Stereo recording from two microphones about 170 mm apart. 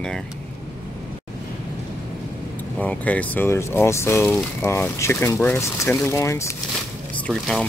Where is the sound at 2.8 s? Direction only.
10° left (ahead or behind).